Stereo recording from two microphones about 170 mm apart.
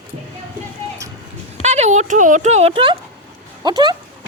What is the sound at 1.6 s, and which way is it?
Speech, 40° right (ahead or behind).